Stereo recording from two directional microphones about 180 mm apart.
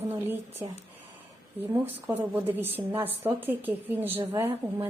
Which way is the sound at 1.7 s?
10° right (ahead or behind).